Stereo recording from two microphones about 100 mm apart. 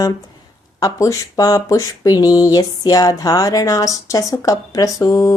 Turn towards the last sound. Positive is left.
turn(degrees=30)  # may be behind; listen again after turning